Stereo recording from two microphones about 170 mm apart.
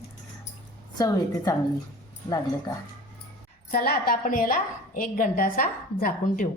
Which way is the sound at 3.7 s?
60° left (ahead or behind).